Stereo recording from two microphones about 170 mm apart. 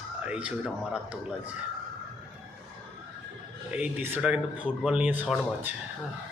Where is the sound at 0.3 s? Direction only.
5° right (ahead or behind).